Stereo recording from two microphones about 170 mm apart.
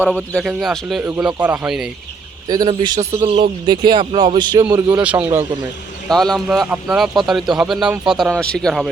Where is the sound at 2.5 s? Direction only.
25° right (ahead or behind).